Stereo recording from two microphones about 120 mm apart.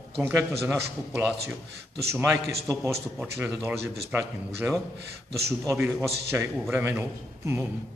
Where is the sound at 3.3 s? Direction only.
20° right (ahead or behind).